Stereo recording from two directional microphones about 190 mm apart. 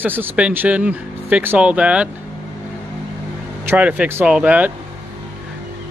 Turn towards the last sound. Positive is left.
turn(degrees=-10)  # may be behind; listen again after turning